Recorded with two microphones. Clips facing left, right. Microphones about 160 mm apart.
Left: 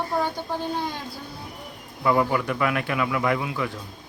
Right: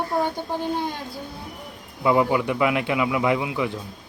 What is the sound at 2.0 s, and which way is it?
Speech, 15° right (ahead or behind).